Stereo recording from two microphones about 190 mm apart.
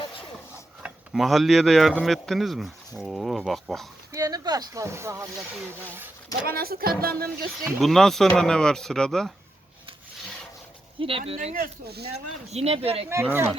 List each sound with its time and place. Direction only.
0.8 s speech: 5° right (ahead or behind)
4.1 s speech: 20° right (ahead or behind)
6.4 s speech: 50° right (ahead or behind)
7.6 s speech: centre (ahead or behind)
11.0 s speech: 30° right (ahead or behind)
11.3 s speech: 45° right (ahead or behind)
12.5 s speech: 35° right (ahead or behind)